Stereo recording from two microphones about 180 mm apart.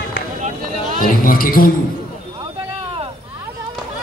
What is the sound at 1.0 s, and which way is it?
Speech, 50° left (ahead or behind).